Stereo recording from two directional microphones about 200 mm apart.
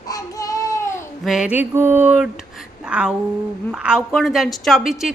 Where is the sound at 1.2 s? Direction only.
5° right (ahead or behind).